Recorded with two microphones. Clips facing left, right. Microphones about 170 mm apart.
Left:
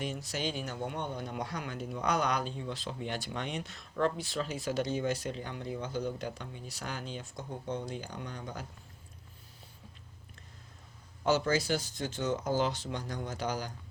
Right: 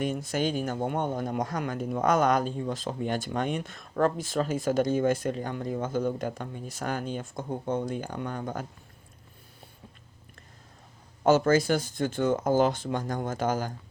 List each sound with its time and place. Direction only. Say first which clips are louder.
0.0 s speech: right 8 dB; 50° right (ahead or behind)
11.2 s speech: right 7 dB; 50° right (ahead or behind)